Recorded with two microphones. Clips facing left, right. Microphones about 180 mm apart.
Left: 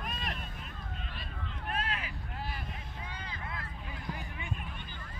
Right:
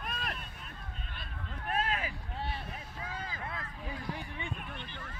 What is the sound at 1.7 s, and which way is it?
Vehicle, 45° right (ahead or behind).